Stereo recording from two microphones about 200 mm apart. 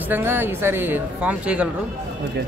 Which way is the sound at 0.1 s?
10° right (ahead or behind).